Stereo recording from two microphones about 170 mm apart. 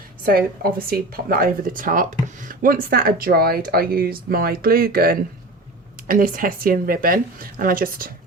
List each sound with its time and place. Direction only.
0.3 s speech: 60° right (ahead or behind)